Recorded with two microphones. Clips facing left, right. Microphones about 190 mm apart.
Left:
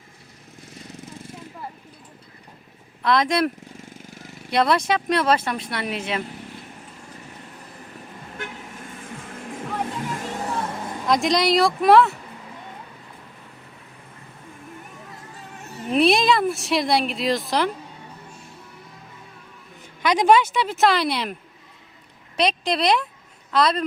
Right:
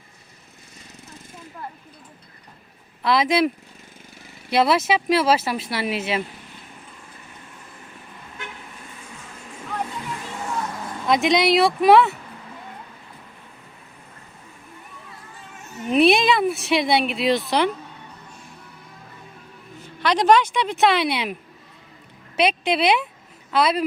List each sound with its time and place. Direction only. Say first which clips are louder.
3.0 s speech: right 1 dB; 5° right (ahead or behind)
4.5 s speech: right 1 dB; 5° right (ahead or behind)
9.0 s music: left 5 dB; 50° left (ahead or behind); by 10.9 s 30° left (ahead or behind)
11.0 s speech: right 2 dB; centre (ahead or behind)
15.6 s a sound: right 2 dB; 35° left (ahead or behind)
15.9 s speech: right 1 dB; centre (ahead or behind)
20.0 s speech: even; 10° left (ahead or behind)
22.4 s speech: right 2 dB; 5° right (ahead or behind)